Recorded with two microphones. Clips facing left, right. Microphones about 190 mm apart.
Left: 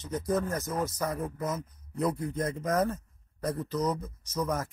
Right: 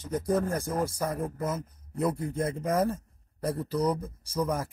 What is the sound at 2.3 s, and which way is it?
Speech, 25° right (ahead or behind).